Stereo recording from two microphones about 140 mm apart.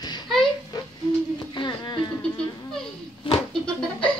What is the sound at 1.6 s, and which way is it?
Speech, 35° left (ahead or behind).